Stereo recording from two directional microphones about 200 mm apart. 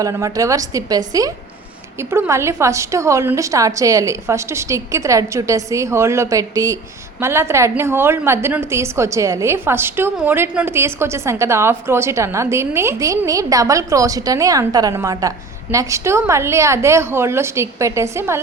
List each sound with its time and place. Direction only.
0.0 s a woman's voice: 15° right (ahead or behind)